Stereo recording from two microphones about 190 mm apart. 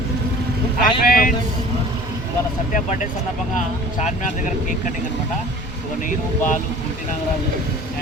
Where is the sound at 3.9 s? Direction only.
45° left (ahead or behind).